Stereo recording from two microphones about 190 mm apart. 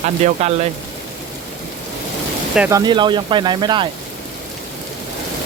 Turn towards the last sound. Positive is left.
turn(degrees=-25)  # may be behind; listen again after turning